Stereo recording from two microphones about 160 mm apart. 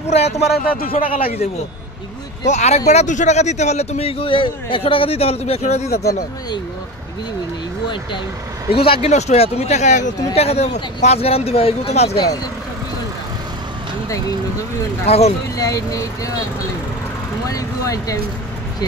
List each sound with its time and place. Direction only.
0.0 s a man's voice: 40° left (ahead or behind)
0.5 s speech: 65° left (ahead or behind)
1.0 s a man's voice: 35° left (ahead or behind)
8.7 s a man's voice: 35° left (ahead or behind)
15.0 s a man's voice: 40° left (ahead or behind)
15.5 s speech: 20° left (ahead or behind)
17.5 s speech: 20° left (ahead or behind)